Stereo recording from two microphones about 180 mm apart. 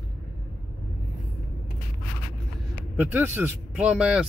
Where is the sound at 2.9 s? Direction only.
10° right (ahead or behind).